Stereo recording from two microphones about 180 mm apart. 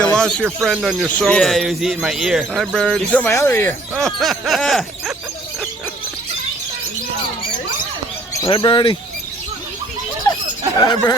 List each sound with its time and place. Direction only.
0.0 s speech: 5° left (ahead or behind)
3.9 s speech: centre (ahead or behind)
8.4 s speech: 25° left (ahead or behind)
10.3 s a sound: 20° left (ahead or behind)
10.8 s speech: 20° left (ahead or behind)